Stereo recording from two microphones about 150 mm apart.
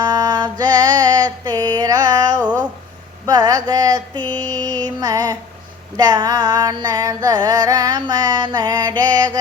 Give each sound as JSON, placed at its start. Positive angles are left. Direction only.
{"t": 0.0, "sound": "music", "side_deg": -25}
{"t": 4.4, "sound": "mantra", "side_deg": -25}
{"t": 6.0, "sound": "music", "side_deg": -25}